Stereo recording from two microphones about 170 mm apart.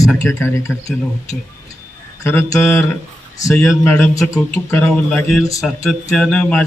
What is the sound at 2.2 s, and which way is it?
A man's voice, 15° left (ahead or behind).